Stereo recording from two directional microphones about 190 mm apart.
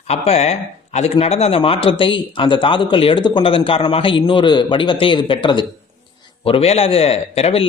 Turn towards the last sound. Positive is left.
turn(degrees=30)  # may be behind; listen again after turning